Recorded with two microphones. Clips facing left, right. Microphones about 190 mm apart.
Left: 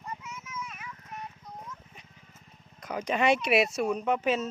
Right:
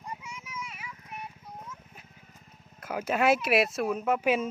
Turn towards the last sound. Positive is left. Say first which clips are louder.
# right 1 dB
turn(degrees=-10)  # may be behind; listen again after turning